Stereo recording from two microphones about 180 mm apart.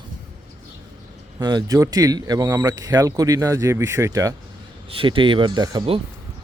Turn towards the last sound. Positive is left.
turn(degrees=-25)  # may be behind; listen again after turning